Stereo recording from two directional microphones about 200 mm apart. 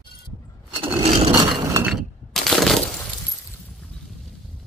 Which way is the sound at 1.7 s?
5° right (ahead or behind).